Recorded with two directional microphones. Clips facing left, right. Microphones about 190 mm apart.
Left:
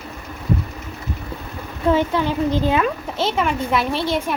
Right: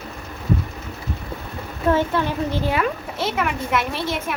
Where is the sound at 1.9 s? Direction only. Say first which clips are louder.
Left 2 dB; 15° left (ahead or behind).